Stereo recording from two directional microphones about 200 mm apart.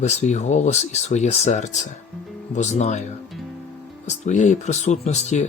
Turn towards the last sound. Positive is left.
turn(degrees=35)  # may be behind; listen again after turning